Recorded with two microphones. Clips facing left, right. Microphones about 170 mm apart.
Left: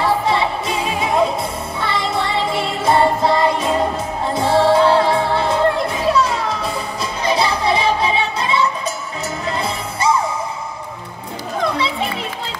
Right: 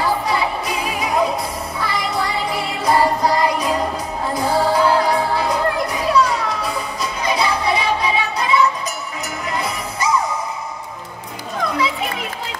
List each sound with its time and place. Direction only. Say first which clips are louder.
0.0 s music: left 2 dB; 25° left (ahead or behind)